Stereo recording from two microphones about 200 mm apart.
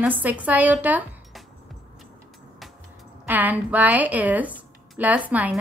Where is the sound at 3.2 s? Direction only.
10° right (ahead or behind).